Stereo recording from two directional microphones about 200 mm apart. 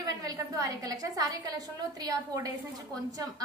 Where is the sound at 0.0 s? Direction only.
15° right (ahead or behind).